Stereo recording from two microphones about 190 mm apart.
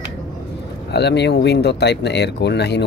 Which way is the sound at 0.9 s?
60° left (ahead or behind).